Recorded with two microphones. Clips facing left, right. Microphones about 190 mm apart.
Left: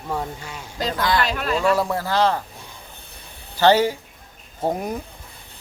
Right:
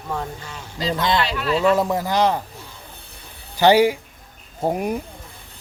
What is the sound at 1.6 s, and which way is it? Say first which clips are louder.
Speech: right 2 dB; 20° right (ahead or behind).